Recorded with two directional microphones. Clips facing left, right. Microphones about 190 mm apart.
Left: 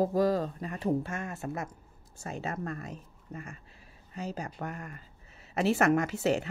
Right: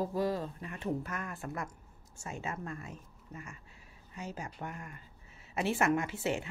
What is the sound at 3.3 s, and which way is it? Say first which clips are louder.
Speech: left 5 dB; 55° left (ahead or behind).